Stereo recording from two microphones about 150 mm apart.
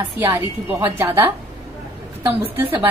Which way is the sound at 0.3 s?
15° right (ahead or behind).